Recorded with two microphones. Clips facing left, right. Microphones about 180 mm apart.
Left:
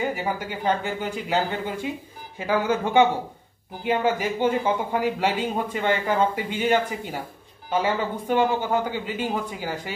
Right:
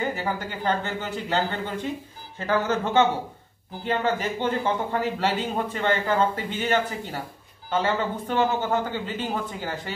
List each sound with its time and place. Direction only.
0.0 s speech: 10° left (ahead or behind)